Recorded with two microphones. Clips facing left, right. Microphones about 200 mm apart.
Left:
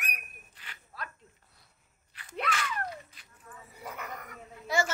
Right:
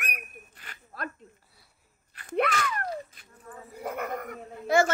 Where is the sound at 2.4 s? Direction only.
40° right (ahead or behind).